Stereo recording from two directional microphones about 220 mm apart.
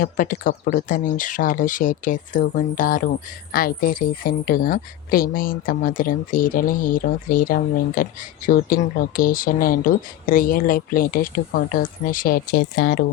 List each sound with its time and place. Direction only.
0.0 s speech: 40° left (ahead or behind)
12.5 s a woman's voice: 55° left (ahead or behind)